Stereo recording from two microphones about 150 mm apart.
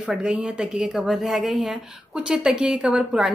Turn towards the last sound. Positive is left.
turn(degrees=-5)  # may be behind; listen again after turning